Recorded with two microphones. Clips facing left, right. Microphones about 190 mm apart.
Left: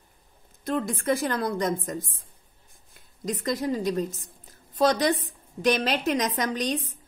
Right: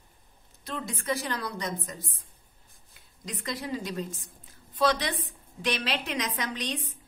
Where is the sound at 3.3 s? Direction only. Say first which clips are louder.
Left 7 dB; 45° left (ahead or behind).